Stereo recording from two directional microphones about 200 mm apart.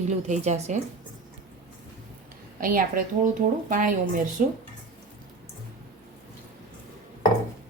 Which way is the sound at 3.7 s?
40° right (ahead or behind).